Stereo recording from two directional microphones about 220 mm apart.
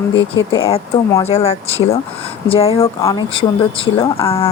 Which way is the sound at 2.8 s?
10° left (ahead or behind).